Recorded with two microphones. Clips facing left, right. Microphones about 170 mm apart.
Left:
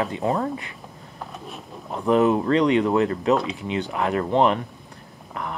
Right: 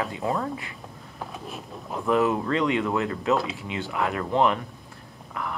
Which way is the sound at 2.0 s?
20° left (ahead or behind).